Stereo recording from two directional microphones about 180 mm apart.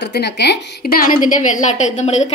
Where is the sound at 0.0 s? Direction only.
65° left (ahead or behind).